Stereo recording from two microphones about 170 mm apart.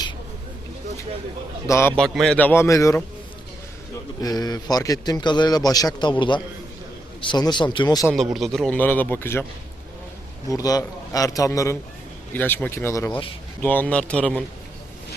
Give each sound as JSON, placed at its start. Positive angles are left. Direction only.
{"t": 1.6, "sound": "speech", "side_deg": 15}
{"t": 2.0, "sound": "speech", "side_deg": 5}
{"t": 4.2, "sound": "a man's voice", "side_deg": 25}
{"t": 8.1, "sound": "speech", "side_deg": 0}
{"t": 10.5, "sound": "a man's voice", "side_deg": 20}